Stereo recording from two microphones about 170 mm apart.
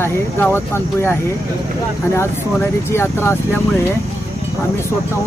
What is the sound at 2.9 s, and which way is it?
Speech, 15° left (ahead or behind).